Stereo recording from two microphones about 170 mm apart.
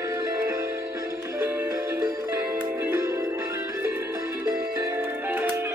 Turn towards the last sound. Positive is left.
turn(degrees=-10)  # may be behind; listen again after turning